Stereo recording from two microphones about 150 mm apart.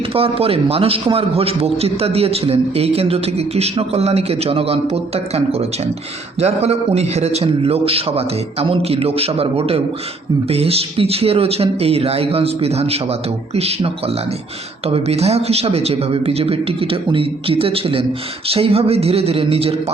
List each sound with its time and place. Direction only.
0.1 s a man's voice: 40° right (ahead or behind)